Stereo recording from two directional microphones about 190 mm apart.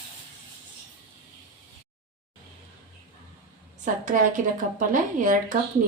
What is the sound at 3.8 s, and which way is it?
A woman's voice, 40° right (ahead or behind).